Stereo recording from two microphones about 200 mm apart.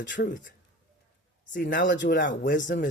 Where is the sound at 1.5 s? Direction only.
60° left (ahead or behind).